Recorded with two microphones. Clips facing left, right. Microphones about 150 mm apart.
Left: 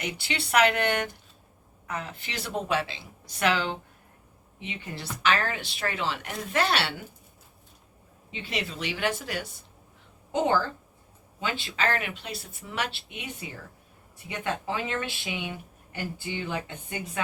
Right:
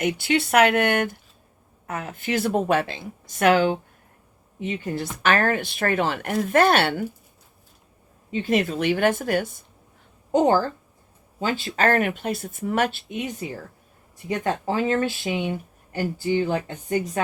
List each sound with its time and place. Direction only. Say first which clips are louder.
0.0 s speech: right 11 dB; 50° right (ahead or behind)
8.3 s speech: right 12 dB; 45° right (ahead or behind)
10.3 s speech: right 6 dB; 40° right (ahead or behind)